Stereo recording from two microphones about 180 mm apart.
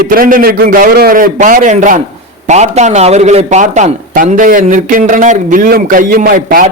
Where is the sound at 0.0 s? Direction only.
50° right (ahead or behind).